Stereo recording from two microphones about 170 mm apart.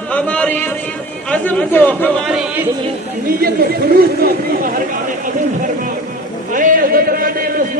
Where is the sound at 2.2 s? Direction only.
5° right (ahead or behind).